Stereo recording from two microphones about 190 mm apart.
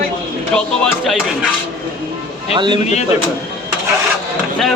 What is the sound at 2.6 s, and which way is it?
Speech, 25° right (ahead or behind).